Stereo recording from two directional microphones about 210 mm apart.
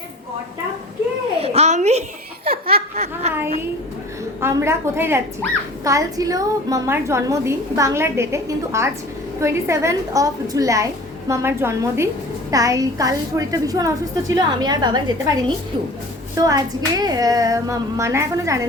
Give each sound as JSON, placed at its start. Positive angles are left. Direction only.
{"t": 1.4, "sound": "a sound", "side_deg": -30}
{"t": 2.4, "sound": "speech", "side_deg": -45}
{"t": 2.9, "sound": "speech", "side_deg": -30}
{"t": 4.4, "sound": "a woman's voice", "side_deg": -10}